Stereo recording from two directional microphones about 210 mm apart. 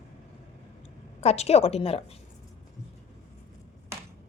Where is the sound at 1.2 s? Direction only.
30° left (ahead or behind).